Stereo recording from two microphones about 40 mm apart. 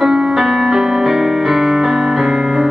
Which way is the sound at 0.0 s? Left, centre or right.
Centre.